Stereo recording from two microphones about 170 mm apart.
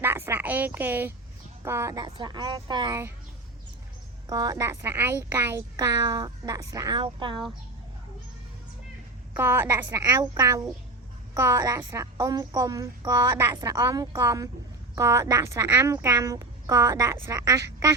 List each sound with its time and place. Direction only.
0.0 s a woman's voice: 15° right (ahead or behind)
4.3 s speech: 20° right (ahead or behind)
9.3 s a woman's voice: 15° right (ahead or behind)